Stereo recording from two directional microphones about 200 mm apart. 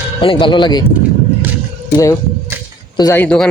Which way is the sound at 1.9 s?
15° left (ahead or behind).